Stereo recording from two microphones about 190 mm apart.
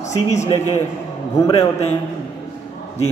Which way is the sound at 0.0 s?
40° left (ahead or behind).